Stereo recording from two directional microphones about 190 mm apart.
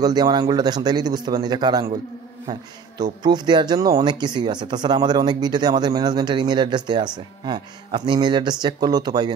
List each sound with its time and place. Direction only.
0.0 s speech: 20° right (ahead or behind)
3.0 s speech: 20° right (ahead or behind)